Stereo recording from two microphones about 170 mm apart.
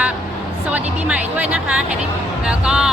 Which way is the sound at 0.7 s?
10° right (ahead or behind).